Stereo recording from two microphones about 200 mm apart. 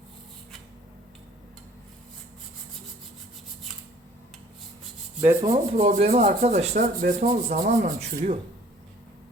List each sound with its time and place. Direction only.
5.2 s rub: 15° right (ahead or behind)
5.7 s speech: 35° right (ahead or behind)
7.9 s speech: 30° right (ahead or behind)